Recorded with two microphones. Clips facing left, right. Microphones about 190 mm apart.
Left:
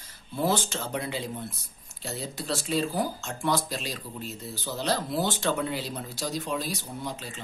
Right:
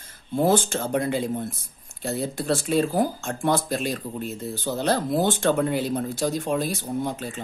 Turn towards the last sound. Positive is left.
turn(degrees=-50)  # may be behind; listen again after turning